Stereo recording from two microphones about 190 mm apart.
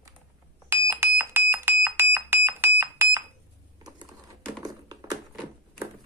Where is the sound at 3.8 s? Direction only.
20° right (ahead or behind).